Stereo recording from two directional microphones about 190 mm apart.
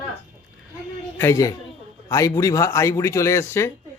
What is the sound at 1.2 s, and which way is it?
A man's voice, 15° left (ahead or behind).